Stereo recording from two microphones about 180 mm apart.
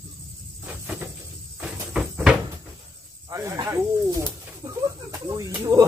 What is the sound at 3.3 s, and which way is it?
Snake, 15° right (ahead or behind).